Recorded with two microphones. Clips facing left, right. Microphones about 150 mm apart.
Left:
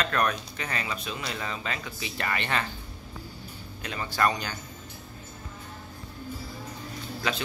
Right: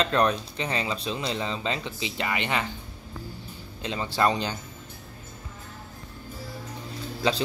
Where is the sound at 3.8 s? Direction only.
25° right (ahead or behind).